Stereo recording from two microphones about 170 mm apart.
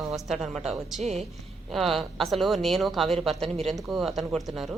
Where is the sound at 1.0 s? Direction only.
40° right (ahead or behind).